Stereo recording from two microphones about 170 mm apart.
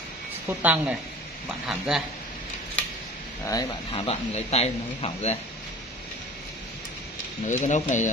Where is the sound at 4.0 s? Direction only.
35° left (ahead or behind).